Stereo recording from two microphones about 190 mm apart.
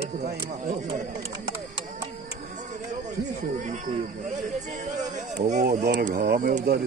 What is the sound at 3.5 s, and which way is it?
Speech, 45° right (ahead or behind).